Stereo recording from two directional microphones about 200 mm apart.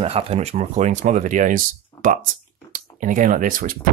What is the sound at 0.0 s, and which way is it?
Speech, 30° right (ahead or behind).